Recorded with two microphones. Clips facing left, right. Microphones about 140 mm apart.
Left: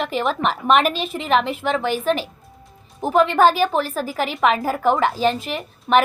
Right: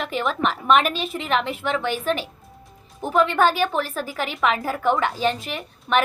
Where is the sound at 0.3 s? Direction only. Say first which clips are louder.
Left 1 dB; 30° left (ahead or behind).